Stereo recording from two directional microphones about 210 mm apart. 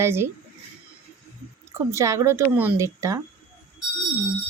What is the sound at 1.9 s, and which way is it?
Speech, 15° right (ahead or behind).